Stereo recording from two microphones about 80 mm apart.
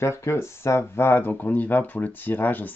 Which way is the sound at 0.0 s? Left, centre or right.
Left.